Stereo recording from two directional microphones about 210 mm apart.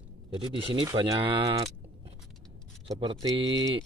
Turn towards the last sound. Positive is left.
turn(degrees=-20)  # may be behind; listen again after turning